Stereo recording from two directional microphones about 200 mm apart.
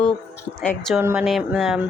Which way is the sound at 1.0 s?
10° right (ahead or behind).